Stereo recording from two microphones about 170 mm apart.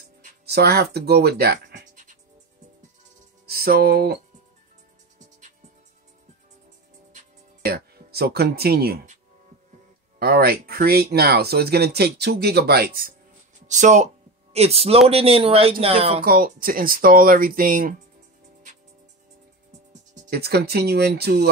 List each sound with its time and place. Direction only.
0.5 s speech: 70° right (ahead or behind)
3.4 s music: 65° right (ahead or behind)
7.6 s speech: 65° right (ahead or behind)
10.1 s speech: 65° right (ahead or behind)
13.7 s speech: 45° right (ahead or behind)
16.3 s speech: 55° right (ahead or behind)
20.2 s speech: 70° right (ahead or behind)